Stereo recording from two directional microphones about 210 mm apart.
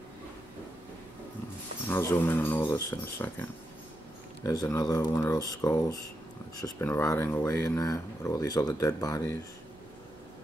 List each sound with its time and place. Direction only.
1.9 s speech: 10° left (ahead or behind)